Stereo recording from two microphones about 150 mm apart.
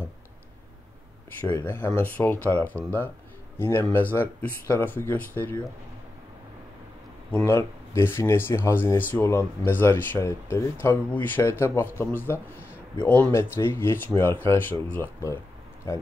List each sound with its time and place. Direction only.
1.4 s speech: 15° left (ahead or behind)
7.2 s speech: 10° left (ahead or behind)